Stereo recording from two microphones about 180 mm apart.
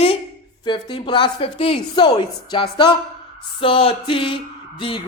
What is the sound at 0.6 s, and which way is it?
A woman's voice, 25° left (ahead or behind).